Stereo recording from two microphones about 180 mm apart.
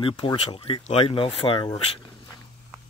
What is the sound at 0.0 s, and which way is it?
Speech, 25° left (ahead or behind).